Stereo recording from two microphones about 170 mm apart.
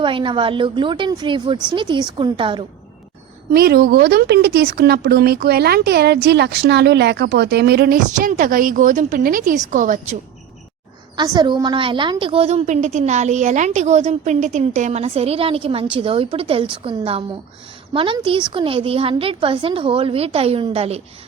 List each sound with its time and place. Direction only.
0.0 s a woman's voice: 30° right (ahead or behind)
3.5 s speech: 65° right (ahead or behind); by 10.2 s 50° right (ahead or behind)
11.2 s a woman's voice: 25° right (ahead or behind)